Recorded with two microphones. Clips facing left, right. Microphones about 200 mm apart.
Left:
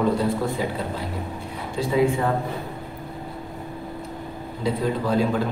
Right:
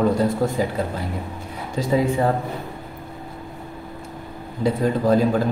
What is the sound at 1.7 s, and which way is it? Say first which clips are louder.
Speech: right 1 dB; 40° right (ahead or behind).